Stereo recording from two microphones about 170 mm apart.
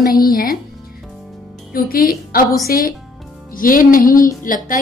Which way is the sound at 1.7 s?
60° left (ahead or behind).